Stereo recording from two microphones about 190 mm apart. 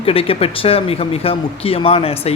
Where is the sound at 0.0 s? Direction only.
30° left (ahead or behind).